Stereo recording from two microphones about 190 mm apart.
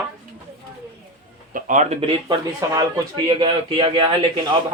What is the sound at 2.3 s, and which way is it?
Speech, 20° right (ahead or behind).